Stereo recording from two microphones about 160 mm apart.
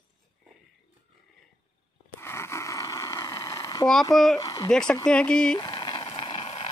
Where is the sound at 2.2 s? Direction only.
15° left (ahead or behind).